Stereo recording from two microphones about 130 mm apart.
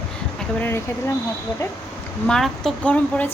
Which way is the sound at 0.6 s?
20° left (ahead or behind).